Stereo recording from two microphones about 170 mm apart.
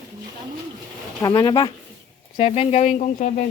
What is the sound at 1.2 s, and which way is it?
Speech, 20° left (ahead or behind).